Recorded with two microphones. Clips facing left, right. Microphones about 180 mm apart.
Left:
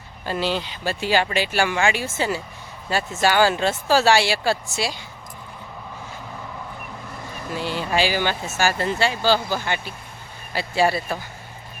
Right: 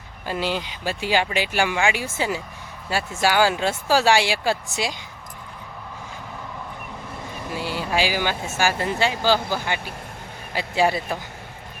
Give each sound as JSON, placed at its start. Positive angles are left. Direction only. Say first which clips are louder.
{"t": 0.3, "sound": "speech", "louder": "left 1 dB", "side_deg": -15}
{"t": 7.5, "sound": "speech", "louder": "left 1 dB", "side_deg": -10}